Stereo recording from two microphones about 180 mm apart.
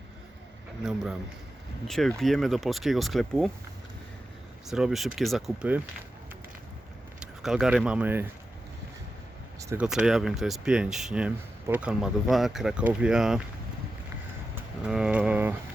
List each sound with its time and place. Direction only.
1.9 s speech: centre (ahead or behind)
4.7 s speech: centre (ahead or behind)
7.2 s speech: 5° right (ahead or behind)
9.6 s speech: 15° right (ahead or behind)
9.8 s speech: 5° right (ahead or behind)
14.8 s speech: 5° right (ahead or behind)